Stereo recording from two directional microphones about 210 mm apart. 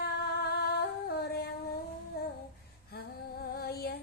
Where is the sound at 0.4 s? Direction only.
50° left (ahead or behind).